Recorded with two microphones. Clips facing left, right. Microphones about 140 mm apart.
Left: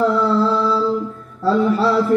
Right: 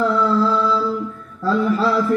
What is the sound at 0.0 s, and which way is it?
Music, 20° left (ahead or behind).